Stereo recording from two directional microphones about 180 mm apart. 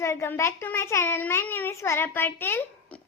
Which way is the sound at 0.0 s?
15° left (ahead or behind).